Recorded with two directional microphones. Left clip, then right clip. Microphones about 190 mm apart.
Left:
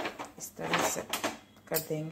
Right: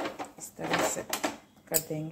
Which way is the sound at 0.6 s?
5° right (ahead or behind).